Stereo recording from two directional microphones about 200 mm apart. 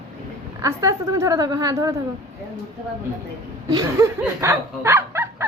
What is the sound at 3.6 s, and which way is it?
Speech, 15° right (ahead or behind).